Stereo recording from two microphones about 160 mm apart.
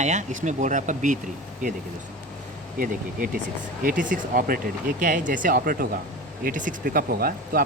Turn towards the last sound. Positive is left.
turn(degrees=-65)  # may be behind; listen again after turning